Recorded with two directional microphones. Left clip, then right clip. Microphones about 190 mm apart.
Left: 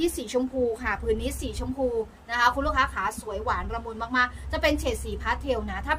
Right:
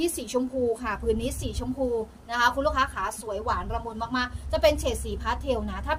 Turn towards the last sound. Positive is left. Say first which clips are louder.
# even
turn(degrees=20)  # may be behind; listen again after turning